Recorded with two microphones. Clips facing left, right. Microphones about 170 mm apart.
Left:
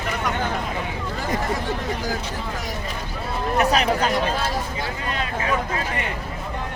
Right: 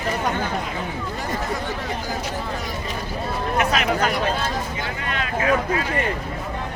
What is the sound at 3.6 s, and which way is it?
Speech, 35° left (ahead or behind).